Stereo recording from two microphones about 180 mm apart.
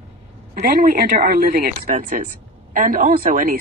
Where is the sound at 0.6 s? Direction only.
55° right (ahead or behind).